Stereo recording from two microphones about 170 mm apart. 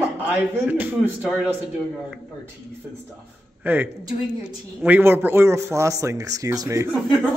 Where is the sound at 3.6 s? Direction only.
10° right (ahead or behind).